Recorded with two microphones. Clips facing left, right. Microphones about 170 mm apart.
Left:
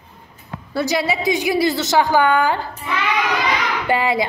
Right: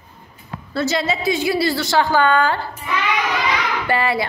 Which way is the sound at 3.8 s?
15° left (ahead or behind).